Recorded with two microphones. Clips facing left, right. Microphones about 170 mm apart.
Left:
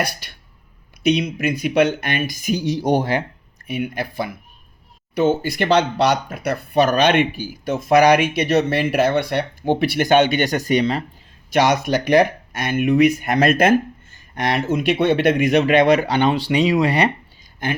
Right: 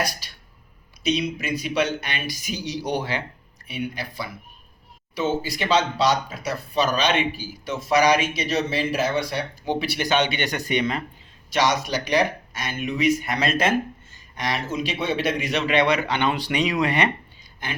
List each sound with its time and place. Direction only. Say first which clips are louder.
0.0 s speech: left 3 dB; 60° left (ahead or behind); by 11.0 s 35° left (ahead or behind)
11.5 s speech: left 5 dB; 55° left (ahead or behind); by 17.1 s 35° left (ahead or behind)